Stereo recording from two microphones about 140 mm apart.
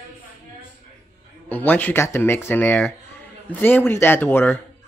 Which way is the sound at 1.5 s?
10° left (ahead or behind).